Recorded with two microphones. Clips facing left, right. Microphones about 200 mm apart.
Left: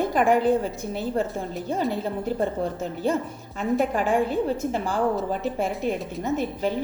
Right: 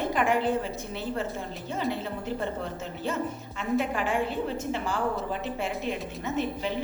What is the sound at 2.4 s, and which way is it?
A woman's voice, 35° left (ahead or behind).